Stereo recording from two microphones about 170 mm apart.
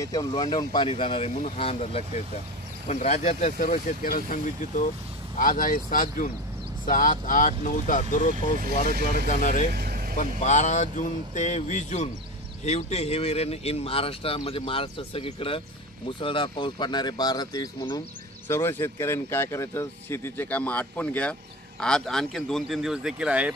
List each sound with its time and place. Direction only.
0.0 s speech: 20° left (ahead or behind); by 9.7 s 50° left (ahead or behind)
9.7 s vehicle: 60° right (ahead or behind)
10.1 s speech: 45° left (ahead or behind); by 23.5 s 5° right (ahead or behind)